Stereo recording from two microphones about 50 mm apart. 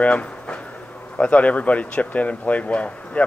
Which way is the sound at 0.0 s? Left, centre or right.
Left.